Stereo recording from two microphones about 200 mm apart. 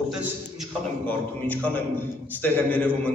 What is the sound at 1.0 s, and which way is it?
A man's voice, 10° left (ahead or behind).